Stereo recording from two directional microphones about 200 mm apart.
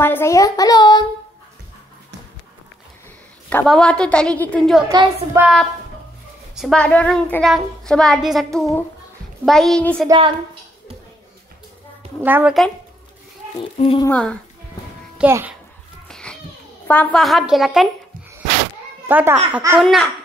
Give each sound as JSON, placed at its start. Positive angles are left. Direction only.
{"t": 0.0, "sound": "child singing", "side_deg": 10}
{"t": 3.4, "sound": "a child's voice", "side_deg": 5}
{"t": 4.8, "sound": "a woman's voice", "side_deg": -20}
{"t": 5.3, "sound": "a child's voice", "side_deg": -5}
{"t": 10.0, "sound": "a woman's voice", "side_deg": -25}
{"t": 12.2, "sound": "a woman's voice", "side_deg": -10}
{"t": 13.7, "sound": "speech", "side_deg": 30}
{"t": 14.0, "sound": "a child's voice", "side_deg": 5}
{"t": 15.1, "sound": "a child's voice", "side_deg": -10}
{"t": 16.1, "sound": "a sound", "side_deg": 5}
{"t": 16.8, "sound": "a child's voice", "side_deg": 10}
{"t": 19.0, "sound": "a woman's voice", "side_deg": -10}
{"t": 19.8, "sound": "a child's voice", "side_deg": 0}